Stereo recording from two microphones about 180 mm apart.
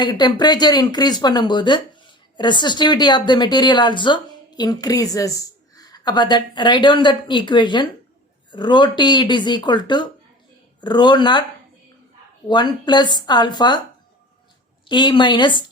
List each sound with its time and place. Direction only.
0.0 s speech: 25° left (ahead or behind)
12.5 s speech: 25° left (ahead or behind)
14.8 s speech: 25° left (ahead or behind)